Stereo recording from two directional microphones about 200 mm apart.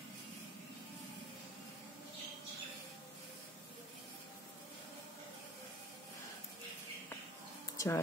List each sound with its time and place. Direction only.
7.7 s music: 15° left (ahead or behind)